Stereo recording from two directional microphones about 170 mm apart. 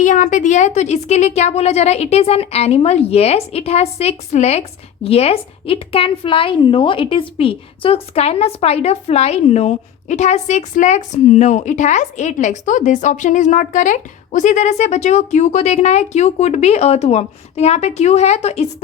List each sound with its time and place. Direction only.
0.0 s a woman's voice: 45° left (ahead or behind)